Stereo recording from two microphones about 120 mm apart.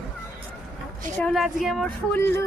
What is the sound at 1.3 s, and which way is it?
Speech, centre (ahead or behind).